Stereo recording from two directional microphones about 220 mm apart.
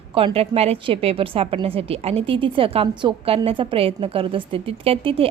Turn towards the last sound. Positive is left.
turn(degrees=-25)  # may be behind; listen again after turning